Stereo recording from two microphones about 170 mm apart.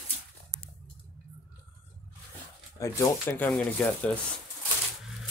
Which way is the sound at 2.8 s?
15° left (ahead or behind).